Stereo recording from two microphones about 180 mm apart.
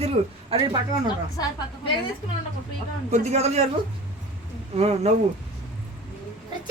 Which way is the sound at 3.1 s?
40° right (ahead or behind).